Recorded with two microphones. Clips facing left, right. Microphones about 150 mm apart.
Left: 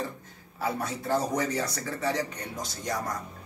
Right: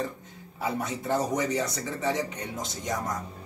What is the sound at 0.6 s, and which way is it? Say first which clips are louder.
Speech: even; 20° right (ahead or behind).